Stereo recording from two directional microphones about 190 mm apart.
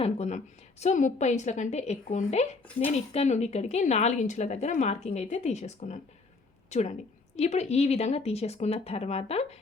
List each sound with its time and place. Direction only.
0.0 s a woman's voice: 35° left (ahead or behind)